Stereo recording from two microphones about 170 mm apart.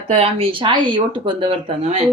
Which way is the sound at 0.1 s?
35° right (ahead or behind).